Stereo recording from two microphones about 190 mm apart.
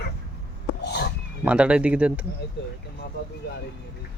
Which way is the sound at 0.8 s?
55° left (ahead or behind).